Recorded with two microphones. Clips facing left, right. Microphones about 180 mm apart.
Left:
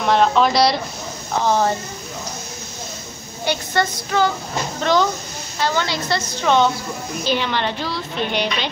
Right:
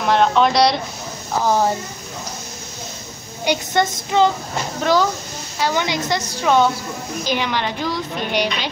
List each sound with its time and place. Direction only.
0.0 s a woman's voice: centre (ahead or behind)
3.4 s a woman's voice: 20° right (ahead or behind)
4.8 s a woman's voice: 10° right (ahead or behind)